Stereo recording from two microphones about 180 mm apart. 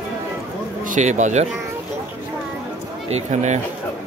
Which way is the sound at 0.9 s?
40° right (ahead or behind).